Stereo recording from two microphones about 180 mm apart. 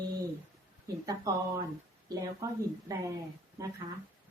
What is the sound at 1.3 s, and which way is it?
Speech, 20° right (ahead or behind).